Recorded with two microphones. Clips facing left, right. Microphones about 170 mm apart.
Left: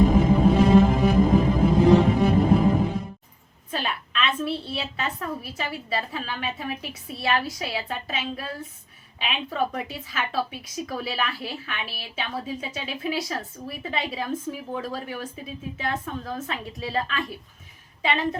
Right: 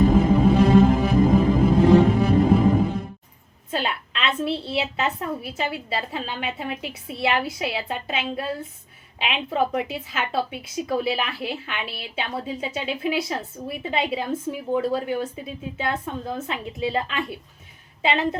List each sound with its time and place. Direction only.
0.2 s music: centre (ahead or behind)
3.7 s a sound: 25° right (ahead or behind)
5.4 s a woman's voice: 25° right (ahead or behind)